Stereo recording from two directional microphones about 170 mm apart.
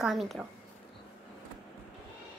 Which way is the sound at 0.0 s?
Centre (ahead or behind).